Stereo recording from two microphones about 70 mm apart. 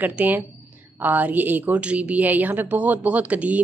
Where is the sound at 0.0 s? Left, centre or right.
Right.